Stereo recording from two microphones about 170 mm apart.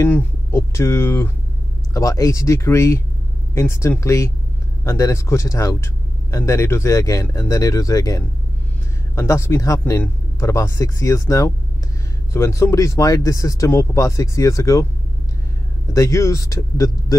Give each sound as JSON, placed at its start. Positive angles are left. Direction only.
{"t": 0.0, "sound": "speech", "side_deg": 15}
{"t": 15.9, "sound": "speech", "side_deg": 15}